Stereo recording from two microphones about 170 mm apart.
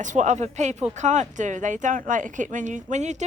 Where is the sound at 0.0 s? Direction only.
45° right (ahead or behind).